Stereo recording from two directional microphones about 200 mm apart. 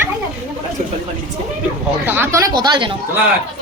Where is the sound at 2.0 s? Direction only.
10° right (ahead or behind).